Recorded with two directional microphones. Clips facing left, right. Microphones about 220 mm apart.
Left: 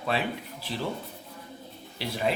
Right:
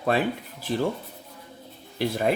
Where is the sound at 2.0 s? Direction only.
50° right (ahead or behind).